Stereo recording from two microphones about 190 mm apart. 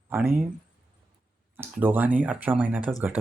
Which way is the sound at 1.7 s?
10° right (ahead or behind).